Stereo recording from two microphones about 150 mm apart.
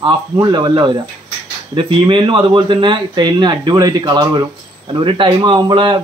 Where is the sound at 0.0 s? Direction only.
30° right (ahead or behind).